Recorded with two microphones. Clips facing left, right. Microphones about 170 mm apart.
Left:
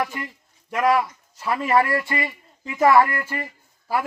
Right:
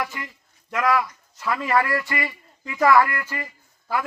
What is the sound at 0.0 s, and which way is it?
A man's voice, 30° left (ahead or behind).